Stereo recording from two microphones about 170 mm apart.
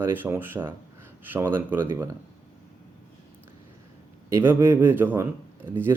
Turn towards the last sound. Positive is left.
turn(degrees=-10)  # may be behind; listen again after turning